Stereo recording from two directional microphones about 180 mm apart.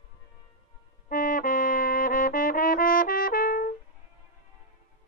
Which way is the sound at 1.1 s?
50° left (ahead or behind).